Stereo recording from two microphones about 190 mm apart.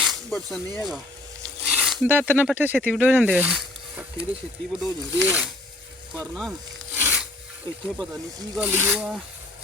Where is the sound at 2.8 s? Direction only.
5° left (ahead or behind).